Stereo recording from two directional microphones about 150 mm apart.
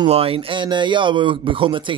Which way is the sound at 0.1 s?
40° right (ahead or behind).